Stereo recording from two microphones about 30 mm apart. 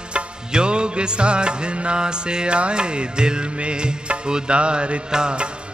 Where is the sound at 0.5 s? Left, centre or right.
Right.